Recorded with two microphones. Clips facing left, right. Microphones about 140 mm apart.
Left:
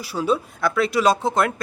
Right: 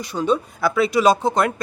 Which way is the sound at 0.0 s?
5° left (ahead or behind).